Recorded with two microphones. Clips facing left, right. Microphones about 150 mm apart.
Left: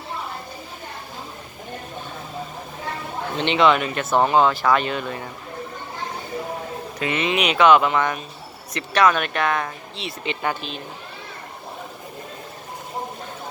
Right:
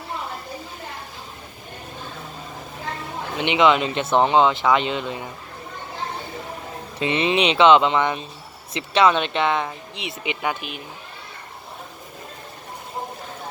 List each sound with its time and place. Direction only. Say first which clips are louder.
3.3 s speech: even; 15° right (ahead or behind)
7.0 s speech: right 2 dB; 30° right (ahead or behind); by 10.8 s 10° right (ahead or behind)